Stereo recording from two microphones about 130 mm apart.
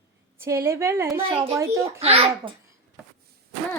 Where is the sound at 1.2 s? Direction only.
45° right (ahead or behind).